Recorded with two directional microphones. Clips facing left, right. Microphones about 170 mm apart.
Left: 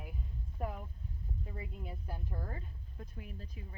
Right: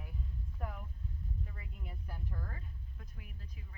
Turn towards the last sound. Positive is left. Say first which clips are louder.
# left 6 dB
turn(degrees=30)  # may be behind; listen again after turning